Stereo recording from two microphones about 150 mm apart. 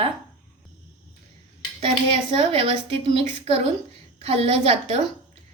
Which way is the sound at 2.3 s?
40° right (ahead or behind).